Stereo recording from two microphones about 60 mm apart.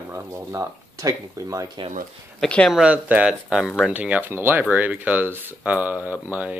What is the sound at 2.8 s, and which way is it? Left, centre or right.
Speech, right.